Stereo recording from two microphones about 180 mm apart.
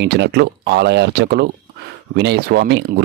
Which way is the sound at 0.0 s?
65° right (ahead or behind).